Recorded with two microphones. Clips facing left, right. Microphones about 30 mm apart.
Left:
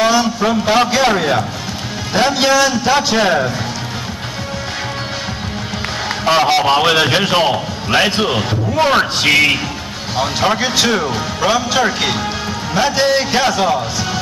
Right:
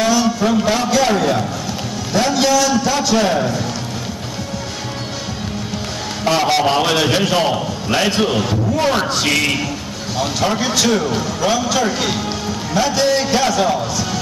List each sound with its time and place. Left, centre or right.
0.0 s a sound: left
0.8 s a man's voice: left
6.2 s a man's voice: centre